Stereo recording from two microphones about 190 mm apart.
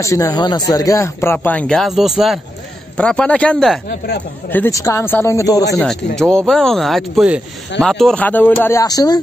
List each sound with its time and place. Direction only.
0.0 s speech: 15° left (ahead or behind)
5.8 s speech: 5° left (ahead or behind); by 9.2 s 20° left (ahead or behind)